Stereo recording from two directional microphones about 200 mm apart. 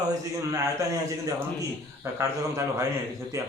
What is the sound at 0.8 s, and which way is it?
Speech, 15° right (ahead or behind).